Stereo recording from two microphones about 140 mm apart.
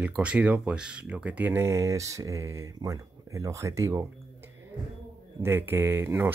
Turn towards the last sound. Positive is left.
turn(degrees=-15)  # may be behind; listen again after turning